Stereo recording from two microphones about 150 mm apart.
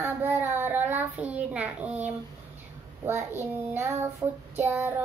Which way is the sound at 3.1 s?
15° right (ahead or behind).